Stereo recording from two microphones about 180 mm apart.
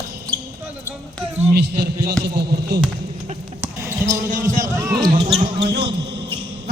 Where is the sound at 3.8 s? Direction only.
15° right (ahead or behind).